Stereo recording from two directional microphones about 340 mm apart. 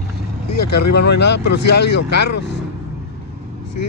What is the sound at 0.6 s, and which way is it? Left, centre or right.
Speech, left.